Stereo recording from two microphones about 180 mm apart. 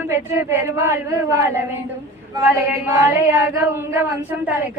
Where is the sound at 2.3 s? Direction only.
10° right (ahead or behind).